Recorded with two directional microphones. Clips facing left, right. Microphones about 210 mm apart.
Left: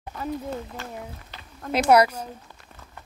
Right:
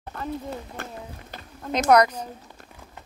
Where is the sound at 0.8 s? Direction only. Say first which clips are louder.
Right 1 dB; 55° right (ahead or behind).